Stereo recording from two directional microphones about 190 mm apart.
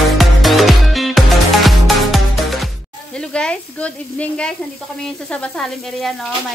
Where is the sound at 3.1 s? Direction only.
5° left (ahead or behind).